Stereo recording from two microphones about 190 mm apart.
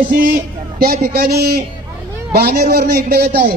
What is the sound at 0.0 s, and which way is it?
A man's voice, 45° right (ahead or behind).